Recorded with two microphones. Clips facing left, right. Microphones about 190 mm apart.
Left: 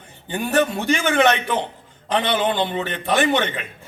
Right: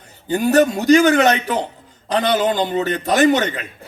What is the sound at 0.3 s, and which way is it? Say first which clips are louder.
A man's voice: right 6 dB; 40° right (ahead or behind).